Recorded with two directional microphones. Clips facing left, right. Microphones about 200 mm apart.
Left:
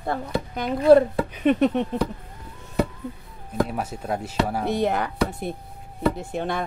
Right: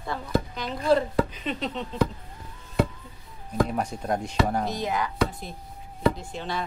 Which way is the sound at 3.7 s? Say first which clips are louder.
Even; 5° left (ahead or behind).